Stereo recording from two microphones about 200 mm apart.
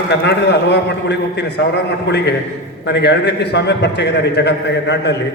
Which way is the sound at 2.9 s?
55° left (ahead or behind).